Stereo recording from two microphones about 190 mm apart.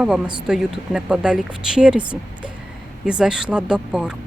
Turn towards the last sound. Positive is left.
turn(degrees=-5)  # may be behind; listen again after turning